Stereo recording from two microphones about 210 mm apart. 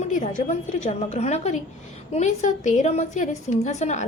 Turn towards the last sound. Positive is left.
turn(degrees=35)  # may be behind; listen again after turning